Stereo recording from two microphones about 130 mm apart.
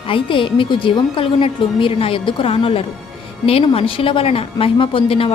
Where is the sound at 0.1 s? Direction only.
40° left (ahead or behind).